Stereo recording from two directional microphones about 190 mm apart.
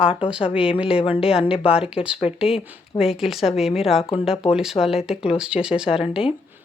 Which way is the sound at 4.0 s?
30° left (ahead or behind).